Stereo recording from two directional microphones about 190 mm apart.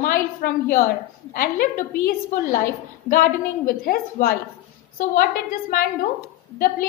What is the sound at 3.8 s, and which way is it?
A woman's voice, 50° left (ahead or behind).